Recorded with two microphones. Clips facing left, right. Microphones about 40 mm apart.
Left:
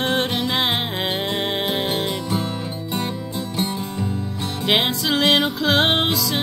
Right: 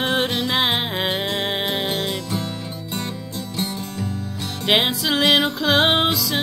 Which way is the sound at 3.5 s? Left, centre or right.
Centre.